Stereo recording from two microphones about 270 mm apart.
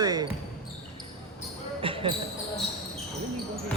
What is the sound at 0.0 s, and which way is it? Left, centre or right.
Basketball bounce, centre.